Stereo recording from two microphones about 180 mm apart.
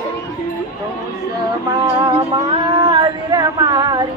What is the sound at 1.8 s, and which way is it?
Music, 30° right (ahead or behind).